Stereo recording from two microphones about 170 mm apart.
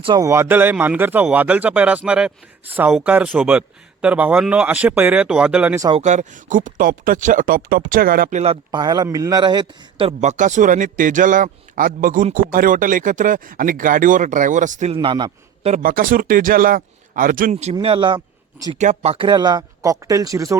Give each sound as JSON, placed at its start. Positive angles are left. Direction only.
{"t": 0.0, "sound": "speech", "side_deg": -25}
{"t": 5.9, "sound": "a man's voice", "side_deg": -45}
{"t": 8.7, "sound": "a man's voice", "side_deg": -25}
{"t": 15.0, "sound": "speech", "side_deg": -25}
{"t": 15.6, "sound": "a man's voice", "side_deg": -50}
{"t": 17.7, "sound": "speech", "side_deg": -30}
{"t": 18.8, "sound": "speech", "side_deg": -40}